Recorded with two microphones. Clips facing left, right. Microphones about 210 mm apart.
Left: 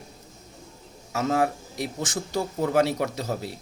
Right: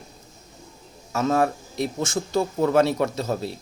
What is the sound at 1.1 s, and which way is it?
A man's voice, 15° left (ahead or behind).